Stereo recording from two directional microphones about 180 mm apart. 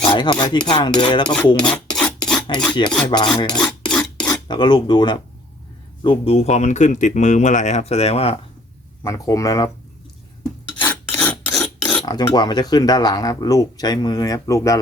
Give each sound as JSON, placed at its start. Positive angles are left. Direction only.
{"t": 0.1, "sound": "speech", "side_deg": 25}
{"t": 1.9, "sound": "filing", "side_deg": 5}
{"t": 2.5, "sound": "speech", "side_deg": 25}
{"t": 3.6, "sound": "filing", "side_deg": 5}
{"t": 4.4, "sound": "speech", "side_deg": 25}
{"t": 9.0, "sound": "speech", "side_deg": 15}
{"t": 10.8, "sound": "filing", "side_deg": 10}
{"t": 12.0, "sound": "speech", "side_deg": 25}